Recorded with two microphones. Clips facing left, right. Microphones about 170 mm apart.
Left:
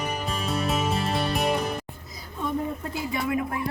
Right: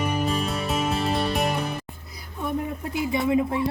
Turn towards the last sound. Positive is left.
turn(degrees=-20)  # may be behind; listen again after turning